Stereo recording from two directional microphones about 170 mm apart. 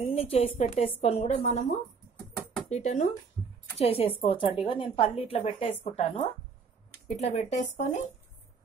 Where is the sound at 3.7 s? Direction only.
35° left (ahead or behind).